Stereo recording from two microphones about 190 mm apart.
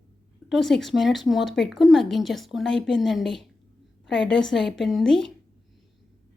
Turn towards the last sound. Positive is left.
turn(degrees=0)  # may be behind; listen again after turning